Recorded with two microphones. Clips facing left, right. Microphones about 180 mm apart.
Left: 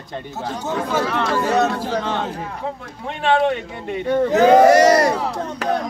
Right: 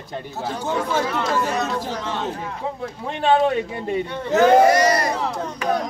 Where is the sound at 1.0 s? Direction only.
60° left (ahead or behind).